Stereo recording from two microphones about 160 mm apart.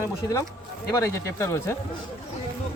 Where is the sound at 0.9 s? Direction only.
15° left (ahead or behind).